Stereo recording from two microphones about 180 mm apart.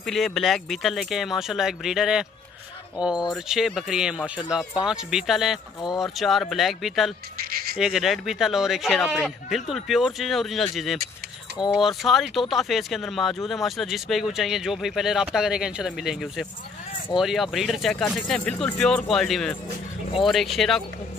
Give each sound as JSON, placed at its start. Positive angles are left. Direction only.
{"t": 0.0, "sound": "speech", "side_deg": 0}
{"t": 7.3, "sound": "insect", "side_deg": -55}
{"t": 7.7, "sound": "speech", "side_deg": 0}